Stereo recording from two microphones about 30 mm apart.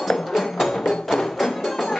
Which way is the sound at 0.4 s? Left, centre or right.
Centre.